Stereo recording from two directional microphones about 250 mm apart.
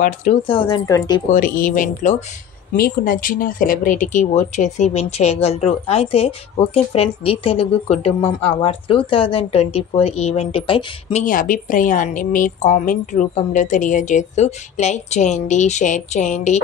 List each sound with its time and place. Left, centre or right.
0.0 s speech: left
0.5 s speech: centre
1.3 s speech: left